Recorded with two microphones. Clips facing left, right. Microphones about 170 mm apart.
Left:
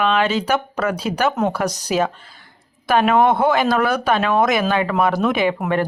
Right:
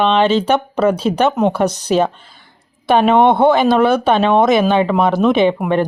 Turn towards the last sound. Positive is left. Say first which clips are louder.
# right 4 dB
turn(degrees=-15)  # may be behind; listen again after turning